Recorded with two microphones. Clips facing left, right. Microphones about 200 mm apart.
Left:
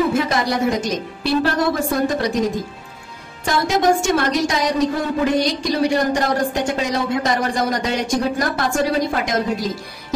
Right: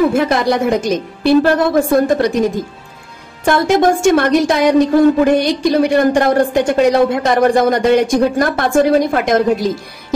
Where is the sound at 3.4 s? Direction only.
55° right (ahead or behind).